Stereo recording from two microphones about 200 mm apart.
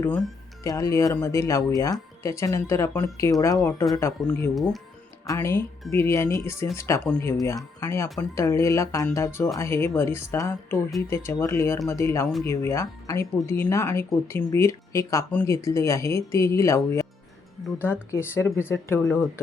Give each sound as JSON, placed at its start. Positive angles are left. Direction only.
{"t": 0.6, "sound": "speech", "side_deg": 15}